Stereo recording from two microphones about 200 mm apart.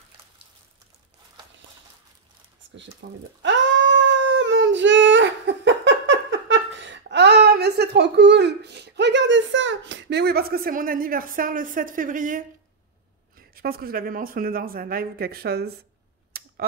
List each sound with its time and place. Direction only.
2.6 s a sound: 70° right (ahead or behind)
3.0 s cat: 65° right (ahead or behind); by 12.4 s 40° right (ahead or behind)
13.6 s speech: 50° right (ahead or behind)